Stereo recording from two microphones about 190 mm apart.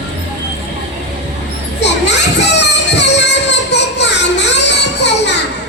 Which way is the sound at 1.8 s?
65° left (ahead or behind).